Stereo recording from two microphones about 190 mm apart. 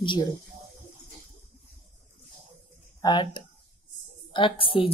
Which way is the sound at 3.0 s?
25° left (ahead or behind).